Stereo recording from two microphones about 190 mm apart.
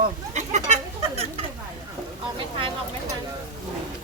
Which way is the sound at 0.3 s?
40° right (ahead or behind).